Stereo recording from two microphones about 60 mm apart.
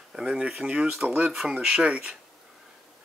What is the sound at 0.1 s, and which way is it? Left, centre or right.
Speech, centre.